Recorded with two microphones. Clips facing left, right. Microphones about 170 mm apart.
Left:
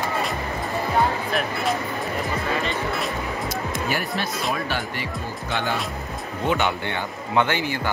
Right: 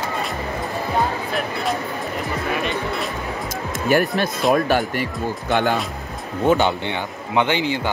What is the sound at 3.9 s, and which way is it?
Speech, 50° right (ahead or behind).